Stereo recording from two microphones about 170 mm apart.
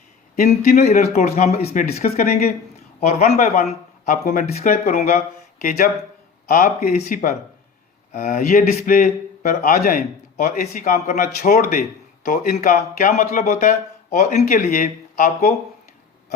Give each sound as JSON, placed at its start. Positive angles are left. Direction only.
{"t": 0.3, "sound": "speech", "side_deg": 45}
{"t": 2.0, "sound": "a man's voice", "side_deg": 60}
{"t": 3.0, "sound": "speech", "side_deg": 40}
{"t": 6.5, "sound": "a man's voice", "side_deg": 50}